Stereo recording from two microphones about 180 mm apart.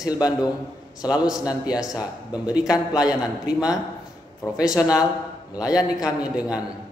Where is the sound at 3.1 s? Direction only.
20° left (ahead or behind).